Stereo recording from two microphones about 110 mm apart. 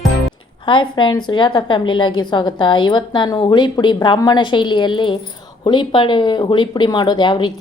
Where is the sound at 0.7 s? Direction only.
45° left (ahead or behind).